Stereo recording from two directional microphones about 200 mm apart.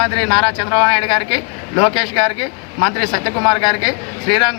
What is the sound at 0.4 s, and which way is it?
A man's voice, 25° left (ahead or behind).